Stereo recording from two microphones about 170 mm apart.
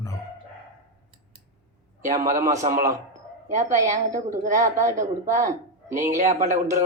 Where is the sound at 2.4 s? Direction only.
45° right (ahead or behind).